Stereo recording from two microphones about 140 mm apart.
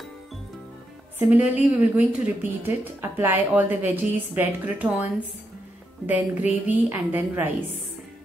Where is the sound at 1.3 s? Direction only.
10° right (ahead or behind).